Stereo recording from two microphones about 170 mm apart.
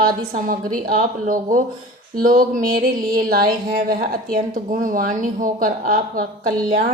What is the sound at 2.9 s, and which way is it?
Music, 25° right (ahead or behind).